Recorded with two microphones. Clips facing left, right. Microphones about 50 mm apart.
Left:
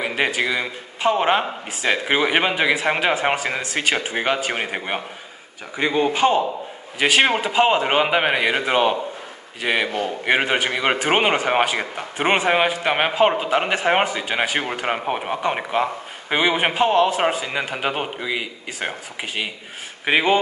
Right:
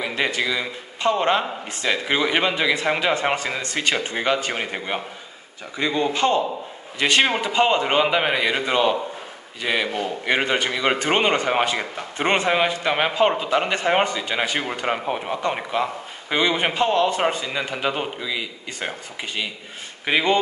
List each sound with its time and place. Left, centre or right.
0.0 s a sound: left
0.4 s speech: left
5.8 s speech: left
6.1 s speech: centre
18.7 s speech: centre